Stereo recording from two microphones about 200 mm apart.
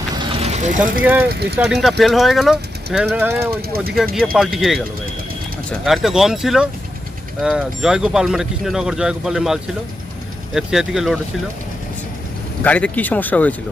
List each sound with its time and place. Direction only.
0.1 s vehicle: 25° right (ahead or behind)
1.0 s speech: 10° right (ahead or behind)
1.3 s speech: 55° right (ahead or behind)
1.5 s speech: 5° right (ahead or behind)
3.5 s speech: 50° right (ahead or behind)
4.1 s speech: centre (ahead or behind)
5.8 s speech: centre (ahead or behind)
12.6 s speech: 5° left (ahead or behind)